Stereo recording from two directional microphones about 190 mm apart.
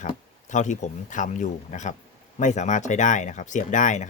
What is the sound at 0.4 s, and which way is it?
Speech, 40° left (ahead or behind).